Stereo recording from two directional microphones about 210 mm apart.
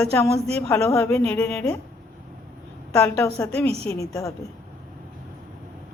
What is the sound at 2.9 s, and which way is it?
A woman's voice, 10° left (ahead or behind).